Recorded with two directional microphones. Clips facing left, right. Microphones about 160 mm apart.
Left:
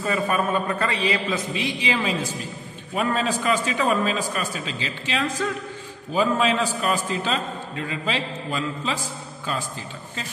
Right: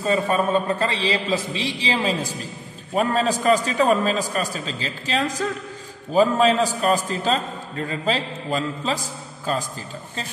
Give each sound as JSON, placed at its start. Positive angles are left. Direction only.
{"t": 0.0, "sound": "a man's voice", "side_deg": -30}